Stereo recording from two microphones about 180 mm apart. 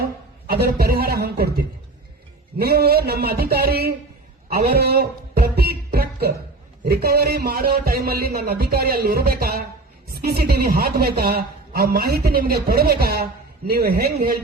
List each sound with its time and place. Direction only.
0.0 s a man's voice: 60° right (ahead or behind)
2.6 s a man's voice: 60° right (ahead or behind)